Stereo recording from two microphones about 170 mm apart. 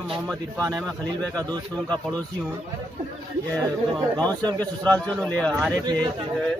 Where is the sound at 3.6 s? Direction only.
20° right (ahead or behind).